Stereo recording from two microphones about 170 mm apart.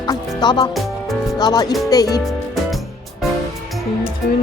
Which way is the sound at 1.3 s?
25° left (ahead or behind).